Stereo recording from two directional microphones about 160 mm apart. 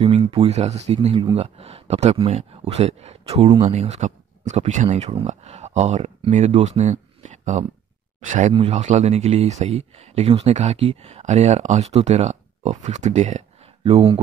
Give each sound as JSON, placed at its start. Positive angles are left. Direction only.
{"t": 0.0, "sound": "speech", "side_deg": -35}